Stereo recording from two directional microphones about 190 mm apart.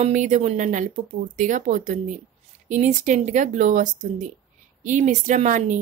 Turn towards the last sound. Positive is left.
turn(degrees=-40)  # may be behind; listen again after turning